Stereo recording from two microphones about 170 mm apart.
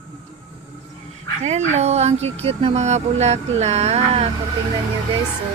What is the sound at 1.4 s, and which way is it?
Speech, 40° right (ahead or behind).